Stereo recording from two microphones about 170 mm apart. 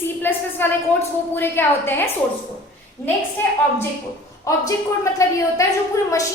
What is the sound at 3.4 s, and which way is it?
Speech, 10° left (ahead or behind).